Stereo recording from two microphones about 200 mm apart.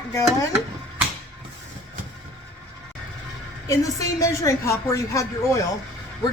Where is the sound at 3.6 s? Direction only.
15° left (ahead or behind).